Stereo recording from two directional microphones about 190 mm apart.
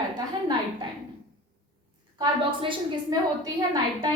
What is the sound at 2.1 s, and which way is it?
A woman's voice, 25° right (ahead or behind).